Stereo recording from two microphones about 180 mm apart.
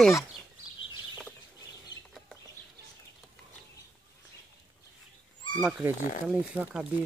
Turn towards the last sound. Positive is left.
turn(degrees=-5)  # may be behind; listen again after turning